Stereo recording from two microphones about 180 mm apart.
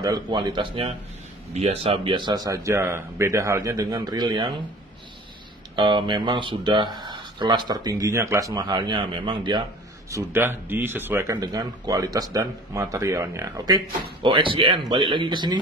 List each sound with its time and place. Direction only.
0.0 s speech: 20° right (ahead or behind)
5.8 s speech: 25° right (ahead or behind)
10.1 s speech: 10° right (ahead or behind)
11.3 s speech: 25° right (ahead or behind)